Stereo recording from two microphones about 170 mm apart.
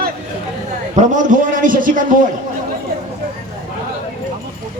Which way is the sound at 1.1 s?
50° right (ahead or behind).